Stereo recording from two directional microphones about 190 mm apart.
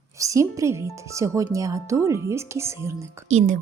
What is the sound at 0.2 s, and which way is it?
Speech, 15° right (ahead or behind).